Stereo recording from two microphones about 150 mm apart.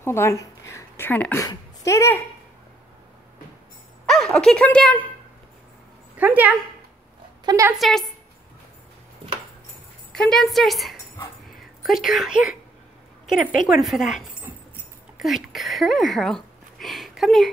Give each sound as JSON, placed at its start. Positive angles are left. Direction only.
{"t": 0.0, "sound": "speech", "side_deg": 15}
{"t": 4.0, "sound": "a woman's voice", "side_deg": 5}
{"t": 6.1, "sound": "speech", "side_deg": -10}
{"t": 7.4, "sound": "speech", "side_deg": -20}
{"t": 7.7, "sound": "a woman's voice", "side_deg": 0}
{"t": 10.1, "sound": "a woman's voice", "side_deg": 5}
{"t": 11.4, "sound": "a sound", "side_deg": 0}
{"t": 13.7, "sound": "a woman's voice", "side_deg": 0}